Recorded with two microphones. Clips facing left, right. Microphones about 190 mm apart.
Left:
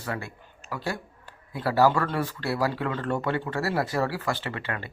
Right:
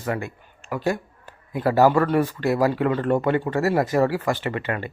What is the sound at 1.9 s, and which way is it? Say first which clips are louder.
Speech: right 8 dB; 15° right (ahead or behind).